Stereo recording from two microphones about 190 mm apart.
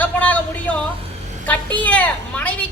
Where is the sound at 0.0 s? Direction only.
10° left (ahead or behind).